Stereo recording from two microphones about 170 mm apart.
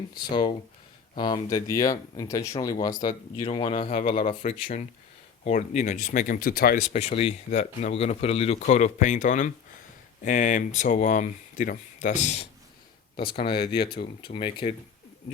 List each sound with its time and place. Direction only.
0.1 s speech: 25° left (ahead or behind); by 6.8 s 60° left (ahead or behind)
6.9 s speech: 35° left (ahead or behind)
13.2 s speech: 65° left (ahead or behind)
14.3 s speech: 30° left (ahead or behind)